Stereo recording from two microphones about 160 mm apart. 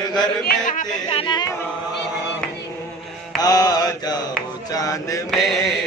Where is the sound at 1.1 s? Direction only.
30° left (ahead or behind).